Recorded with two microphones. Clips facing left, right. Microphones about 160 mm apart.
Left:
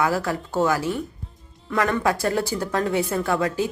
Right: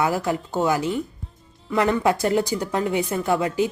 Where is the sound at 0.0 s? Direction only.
20° right (ahead or behind).